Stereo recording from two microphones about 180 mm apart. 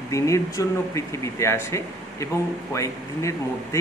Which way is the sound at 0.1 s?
15° left (ahead or behind).